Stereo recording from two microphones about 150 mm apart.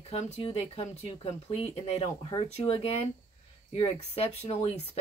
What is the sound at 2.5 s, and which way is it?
Speech, 40° left (ahead or behind).